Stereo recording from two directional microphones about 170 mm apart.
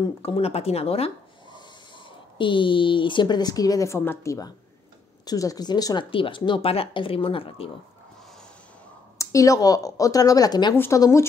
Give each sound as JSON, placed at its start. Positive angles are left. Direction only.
{"t": 0.2, "sound": "speech", "side_deg": 35}
{"t": 9.2, "sound": "speech", "side_deg": 20}